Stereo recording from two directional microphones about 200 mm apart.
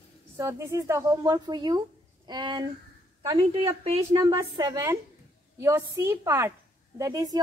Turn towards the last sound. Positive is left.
turn(degrees=-15)  # may be behind; listen again after turning